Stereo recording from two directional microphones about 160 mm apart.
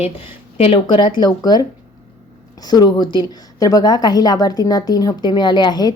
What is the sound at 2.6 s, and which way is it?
A woman's voice, 25° left (ahead or behind).